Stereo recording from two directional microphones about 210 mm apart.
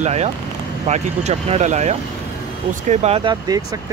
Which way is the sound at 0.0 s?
30° right (ahead or behind).